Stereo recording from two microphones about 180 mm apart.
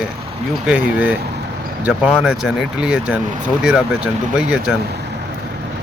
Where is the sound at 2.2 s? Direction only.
5° right (ahead or behind).